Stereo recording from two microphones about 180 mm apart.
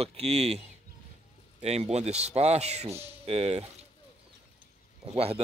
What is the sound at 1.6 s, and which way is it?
Speech, 35° right (ahead or behind).